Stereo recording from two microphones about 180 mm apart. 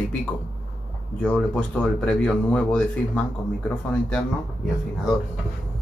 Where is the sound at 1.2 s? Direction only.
5° left (ahead or behind).